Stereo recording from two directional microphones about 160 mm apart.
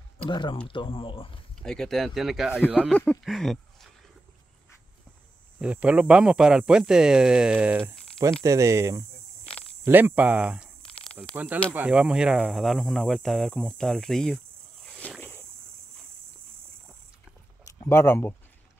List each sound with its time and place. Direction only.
0.3 s speech: 30° left (ahead or behind)
1.6 s speech: 5° left (ahead or behind)
5.6 s speech: 10° right (ahead or behind)
10.8 s a sound: 5° left (ahead or behind)
11.3 s speech: 10° right (ahead or behind)
14.9 s a sound: 10° left (ahead or behind)
17.8 s speech: 15° left (ahead or behind)